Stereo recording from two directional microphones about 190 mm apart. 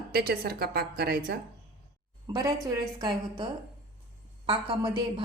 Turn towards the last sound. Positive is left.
turn(degrees=-25)  # may be behind; listen again after turning